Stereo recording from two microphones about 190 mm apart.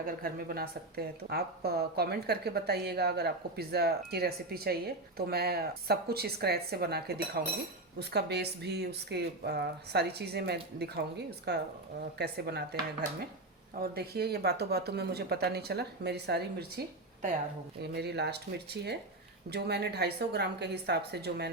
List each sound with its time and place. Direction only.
0.0 s speech: 50° right (ahead or behind)
13.7 s speech: 55° right (ahead or behind)
17.9 s speech: 60° right (ahead or behind)